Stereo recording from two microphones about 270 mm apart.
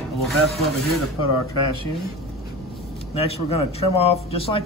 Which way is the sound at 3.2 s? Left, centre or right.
Left.